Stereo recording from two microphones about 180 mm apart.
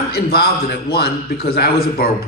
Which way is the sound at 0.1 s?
60° left (ahead or behind).